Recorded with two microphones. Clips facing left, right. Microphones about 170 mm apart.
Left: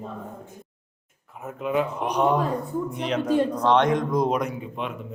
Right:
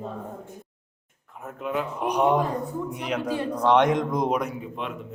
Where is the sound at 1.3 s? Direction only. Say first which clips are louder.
Left 4 dB; centre (ahead or behind).